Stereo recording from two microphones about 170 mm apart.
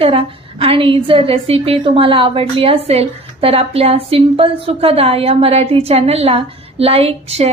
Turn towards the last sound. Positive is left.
turn(degrees=-35)  # may be behind; listen again after turning